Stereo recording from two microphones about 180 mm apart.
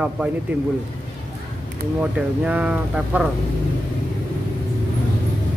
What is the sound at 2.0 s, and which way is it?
Speech, 5° right (ahead or behind).